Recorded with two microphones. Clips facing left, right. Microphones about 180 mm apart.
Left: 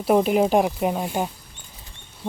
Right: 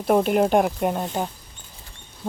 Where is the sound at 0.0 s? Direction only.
5° left (ahead or behind).